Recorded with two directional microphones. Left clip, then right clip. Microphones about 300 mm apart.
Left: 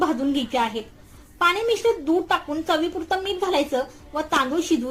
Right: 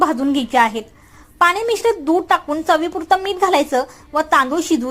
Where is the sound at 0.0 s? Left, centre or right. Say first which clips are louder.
Right 6 dB; centre.